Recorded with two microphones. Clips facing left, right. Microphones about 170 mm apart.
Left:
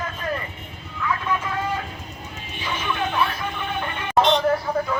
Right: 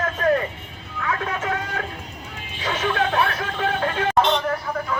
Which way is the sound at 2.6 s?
70° right (ahead or behind).